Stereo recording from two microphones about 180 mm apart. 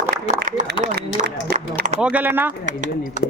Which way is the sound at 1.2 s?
60° right (ahead or behind).